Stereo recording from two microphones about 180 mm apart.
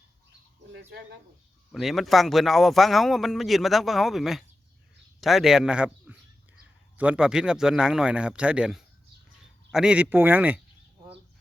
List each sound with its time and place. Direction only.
0.7 s speech: 70° right (ahead or behind)
1.7 s speech: centre (ahead or behind)